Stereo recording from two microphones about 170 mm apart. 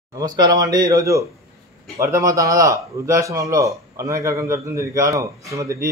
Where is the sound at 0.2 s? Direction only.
20° right (ahead or behind).